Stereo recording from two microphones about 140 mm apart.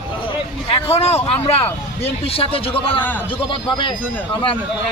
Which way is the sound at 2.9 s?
15° left (ahead or behind).